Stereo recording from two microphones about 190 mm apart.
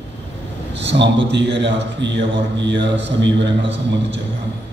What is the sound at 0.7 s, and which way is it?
A man's voice, 70° right (ahead or behind).